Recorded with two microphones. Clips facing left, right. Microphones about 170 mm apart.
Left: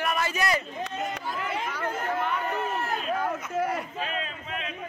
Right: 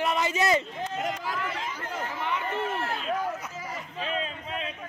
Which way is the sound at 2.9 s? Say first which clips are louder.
Left 1 dB; 60° left (ahead or behind).